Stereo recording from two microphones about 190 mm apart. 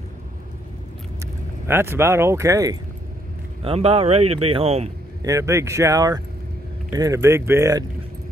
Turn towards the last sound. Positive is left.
turn(degrees=-15)  # may be behind; listen again after turning